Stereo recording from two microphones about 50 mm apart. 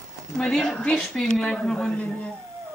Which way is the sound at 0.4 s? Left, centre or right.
Centre.